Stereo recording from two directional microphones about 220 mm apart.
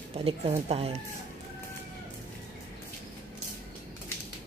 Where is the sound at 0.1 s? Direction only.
25° right (ahead or behind).